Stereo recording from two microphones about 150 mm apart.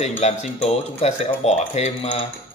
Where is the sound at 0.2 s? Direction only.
45° left (ahead or behind).